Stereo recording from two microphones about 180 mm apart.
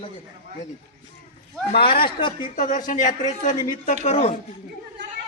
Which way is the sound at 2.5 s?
45° left (ahead or behind).